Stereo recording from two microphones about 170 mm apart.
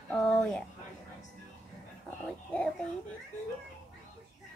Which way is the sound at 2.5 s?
5° left (ahead or behind).